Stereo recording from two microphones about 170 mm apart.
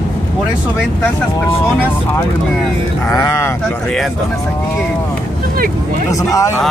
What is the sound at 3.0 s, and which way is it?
Speech, 15° left (ahead or behind).